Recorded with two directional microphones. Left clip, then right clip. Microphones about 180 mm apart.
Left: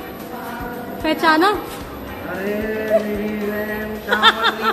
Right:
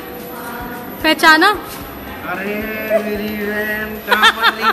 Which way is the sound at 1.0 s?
10° right (ahead or behind).